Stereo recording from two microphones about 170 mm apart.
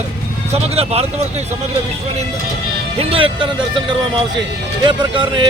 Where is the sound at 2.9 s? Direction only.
30° right (ahead or behind).